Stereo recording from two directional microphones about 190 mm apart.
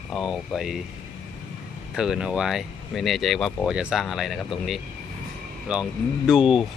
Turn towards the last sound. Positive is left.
turn(degrees=-5)  # may be behind; listen again after turning